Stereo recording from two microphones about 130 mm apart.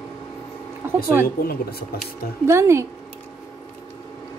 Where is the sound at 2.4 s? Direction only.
20° right (ahead or behind).